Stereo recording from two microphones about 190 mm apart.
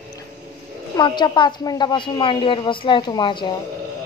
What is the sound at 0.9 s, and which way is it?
A woman's voice, 25° left (ahead or behind).